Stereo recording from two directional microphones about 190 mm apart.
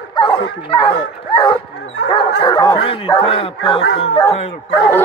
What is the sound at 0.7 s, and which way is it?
Speech, 25° left (ahead or behind).